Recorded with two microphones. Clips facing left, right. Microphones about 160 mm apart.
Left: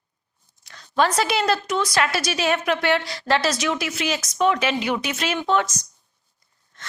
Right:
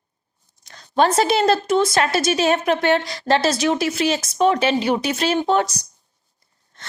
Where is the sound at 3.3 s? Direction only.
30° right (ahead or behind).